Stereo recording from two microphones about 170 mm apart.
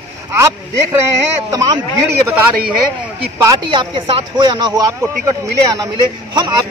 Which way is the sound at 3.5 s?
30° right (ahead or behind).